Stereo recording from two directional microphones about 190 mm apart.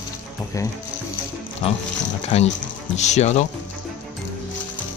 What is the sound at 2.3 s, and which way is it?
Speech, 35° left (ahead or behind).